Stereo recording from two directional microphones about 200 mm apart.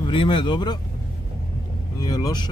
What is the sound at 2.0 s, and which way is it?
Vehicle, 20° left (ahead or behind).